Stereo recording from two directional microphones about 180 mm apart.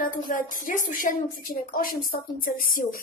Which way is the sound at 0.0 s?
50° left (ahead or behind).